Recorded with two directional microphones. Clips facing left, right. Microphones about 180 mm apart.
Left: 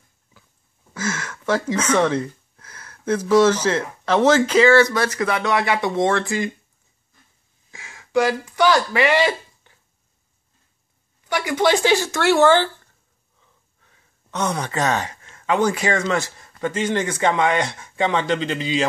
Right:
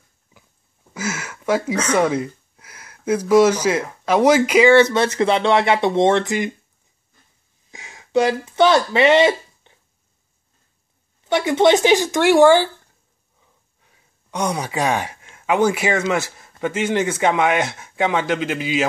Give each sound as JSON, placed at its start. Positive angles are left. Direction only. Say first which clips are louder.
{"t": 0.9, "sound": "speech", "louder": "even", "side_deg": -10}
{"t": 7.7, "sound": "speech", "louder": "right 1 dB", "side_deg": -20}
{"t": 11.2, "sound": "speech", "louder": "right 4 dB", "side_deg": -25}